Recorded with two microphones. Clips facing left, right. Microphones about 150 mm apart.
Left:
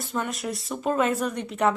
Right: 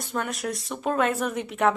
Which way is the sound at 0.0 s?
Centre (ahead or behind).